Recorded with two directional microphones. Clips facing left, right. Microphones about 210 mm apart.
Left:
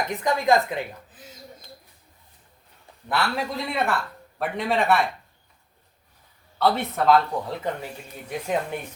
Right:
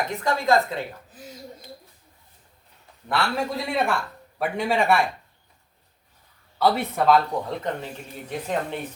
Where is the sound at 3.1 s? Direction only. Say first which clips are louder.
Right 1 dB; centre (ahead or behind).